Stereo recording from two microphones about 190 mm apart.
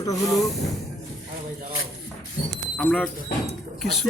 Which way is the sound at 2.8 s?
5° left (ahead or behind).